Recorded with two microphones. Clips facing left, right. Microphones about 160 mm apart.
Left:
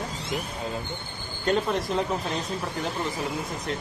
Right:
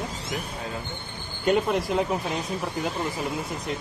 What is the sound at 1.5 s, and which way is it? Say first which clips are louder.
Speech: right 2 dB; 10° right (ahead or behind).